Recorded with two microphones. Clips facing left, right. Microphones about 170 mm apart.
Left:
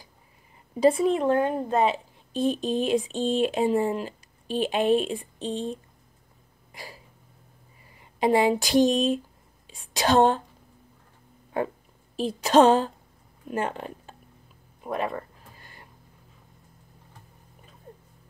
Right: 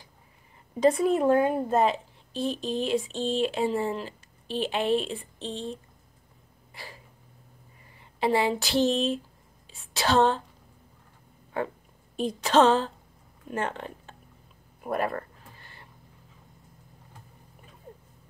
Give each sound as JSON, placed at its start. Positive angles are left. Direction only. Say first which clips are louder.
{"t": 0.7, "sound": "speech", "louder": "left 2 dB", "side_deg": 10}
{"t": 1.0, "sound": "speech", "louder": "even", "side_deg": -5}
{"t": 2.6, "sound": "speech", "louder": "left 3 dB", "side_deg": 50}
{"t": 3.1, "sound": "speech", "louder": "left 3 dB", "side_deg": 15}
{"t": 6.7, "sound": "a sound", "louder": "left 2 dB", "side_deg": 15}
{"t": 8.2, "sound": "speech", "louder": "left 4 dB", "side_deg": 15}
{"t": 12.2, "sound": "speech", "louder": "left 3 dB", "side_deg": 10}
{"t": 14.8, "sound": "speech", "louder": "right 1 dB", "side_deg": -5}
{"t": 15.6, "sound": "a sound", "louder": "left 1 dB", "side_deg": 15}